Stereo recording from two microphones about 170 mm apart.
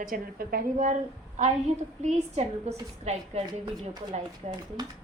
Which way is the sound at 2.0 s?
40° right (ahead or behind).